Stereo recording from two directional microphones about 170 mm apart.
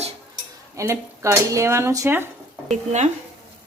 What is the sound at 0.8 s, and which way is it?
Speech, 15° right (ahead or behind).